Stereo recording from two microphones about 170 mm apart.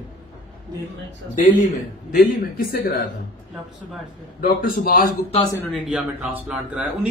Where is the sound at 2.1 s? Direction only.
60° left (ahead or behind).